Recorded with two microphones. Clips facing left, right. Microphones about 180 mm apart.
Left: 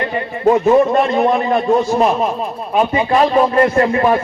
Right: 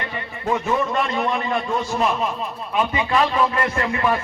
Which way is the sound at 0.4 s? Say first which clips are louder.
Left 11 dB; 45° left (ahead or behind).